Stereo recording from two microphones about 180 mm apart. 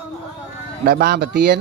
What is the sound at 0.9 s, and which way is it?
Speech, 60° right (ahead or behind).